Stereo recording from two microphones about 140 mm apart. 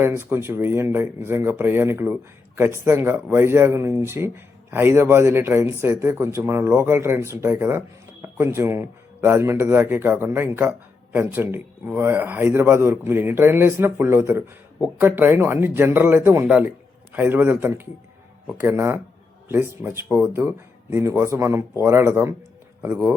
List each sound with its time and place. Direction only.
0.0 s speech: 15° right (ahead or behind)